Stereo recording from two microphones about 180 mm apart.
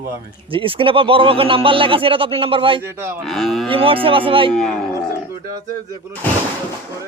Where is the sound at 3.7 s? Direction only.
30° right (ahead or behind).